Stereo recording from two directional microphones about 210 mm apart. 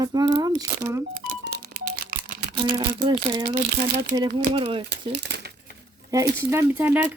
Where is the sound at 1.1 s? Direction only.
45° right (ahead or behind).